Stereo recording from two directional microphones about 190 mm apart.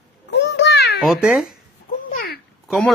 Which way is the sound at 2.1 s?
50° left (ahead or behind).